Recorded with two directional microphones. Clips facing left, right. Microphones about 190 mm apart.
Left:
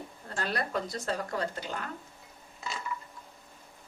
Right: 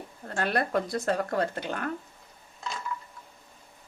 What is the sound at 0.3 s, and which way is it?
A woman's voice, 55° right (ahead or behind).